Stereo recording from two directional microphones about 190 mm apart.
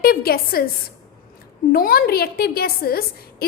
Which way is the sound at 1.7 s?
50° left (ahead or behind).